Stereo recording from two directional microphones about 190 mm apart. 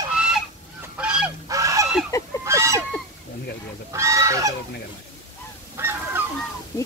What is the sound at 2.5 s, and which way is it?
Fowl, 15° right (ahead or behind).